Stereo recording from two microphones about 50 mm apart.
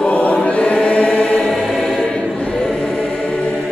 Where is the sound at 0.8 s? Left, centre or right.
Left.